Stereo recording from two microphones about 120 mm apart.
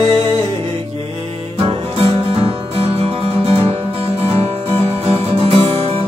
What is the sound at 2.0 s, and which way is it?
Music, 50° right (ahead or behind).